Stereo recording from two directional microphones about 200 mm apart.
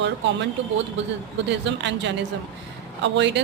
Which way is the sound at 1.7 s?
60° right (ahead or behind).